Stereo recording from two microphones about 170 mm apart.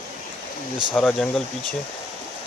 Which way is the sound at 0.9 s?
10° left (ahead or behind).